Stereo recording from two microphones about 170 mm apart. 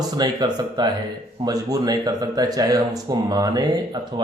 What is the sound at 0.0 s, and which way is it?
Speech, 25° right (ahead or behind).